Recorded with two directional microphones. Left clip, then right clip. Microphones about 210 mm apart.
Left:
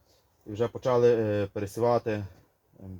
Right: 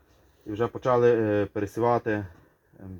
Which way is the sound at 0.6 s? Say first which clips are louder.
Right 1 dB; 20° right (ahead or behind).